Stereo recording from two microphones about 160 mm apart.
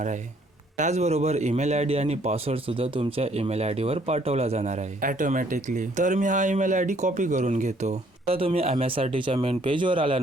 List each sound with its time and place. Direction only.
0.8 s a man's voice: 45° right (ahead or behind)